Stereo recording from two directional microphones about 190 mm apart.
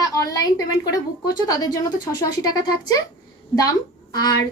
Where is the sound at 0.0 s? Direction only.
20° left (ahead or behind).